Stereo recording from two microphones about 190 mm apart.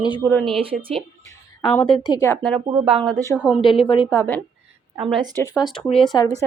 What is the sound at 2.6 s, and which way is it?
Speech, 30° right (ahead or behind).